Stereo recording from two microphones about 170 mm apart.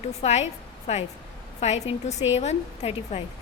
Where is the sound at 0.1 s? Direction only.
40° left (ahead or behind).